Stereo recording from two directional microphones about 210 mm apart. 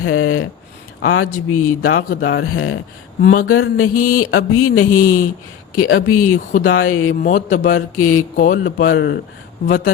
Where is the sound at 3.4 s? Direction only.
90° left.